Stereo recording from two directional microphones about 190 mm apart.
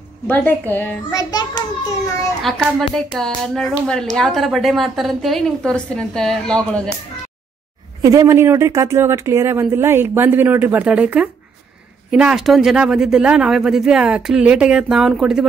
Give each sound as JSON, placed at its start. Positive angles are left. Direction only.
{"t": 0.3, "sound": "a child's voice", "side_deg": 10}
{"t": 2.4, "sound": "speech", "side_deg": 0}
{"t": 8.0, "sound": "speech", "side_deg": -15}